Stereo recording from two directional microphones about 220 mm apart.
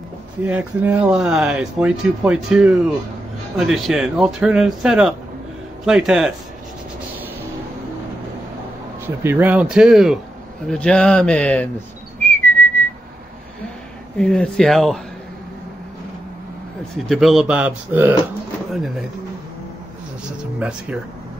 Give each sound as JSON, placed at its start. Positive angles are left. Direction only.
{"t": 0.4, "sound": "speech", "side_deg": -5}
{"t": 9.0, "sound": "speech", "side_deg": -10}
{"t": 12.2, "sound": "whistling", "side_deg": 10}
{"t": 14.1, "sound": "speech", "side_deg": 5}
{"t": 16.9, "sound": "speech", "side_deg": 0}
{"t": 20.5, "sound": "speech", "side_deg": -5}